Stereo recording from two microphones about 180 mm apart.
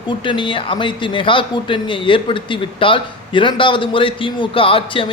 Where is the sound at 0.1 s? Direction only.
25° left (ahead or behind).